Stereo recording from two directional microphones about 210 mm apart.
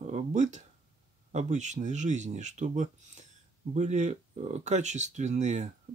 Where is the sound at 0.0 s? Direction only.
35° right (ahead or behind).